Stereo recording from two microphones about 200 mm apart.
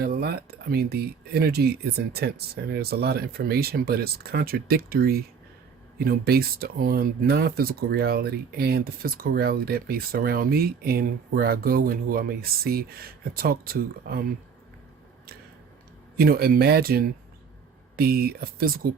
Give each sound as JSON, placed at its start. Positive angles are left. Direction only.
{"t": 0.0, "sound": "speech", "side_deg": -50}
{"t": 16.1, "sound": "speech", "side_deg": -50}